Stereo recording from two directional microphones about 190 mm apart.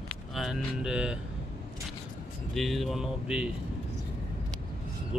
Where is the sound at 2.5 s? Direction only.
Centre (ahead or behind).